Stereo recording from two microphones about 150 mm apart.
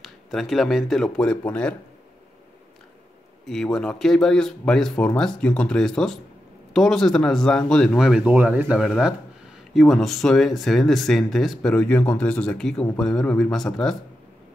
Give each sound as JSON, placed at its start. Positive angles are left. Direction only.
{"t": 0.0, "sound": "speech", "side_deg": 0}
{"t": 3.4, "sound": "speech", "side_deg": 5}